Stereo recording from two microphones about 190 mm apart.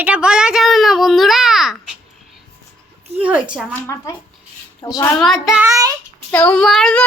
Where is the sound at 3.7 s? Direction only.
15° left (ahead or behind).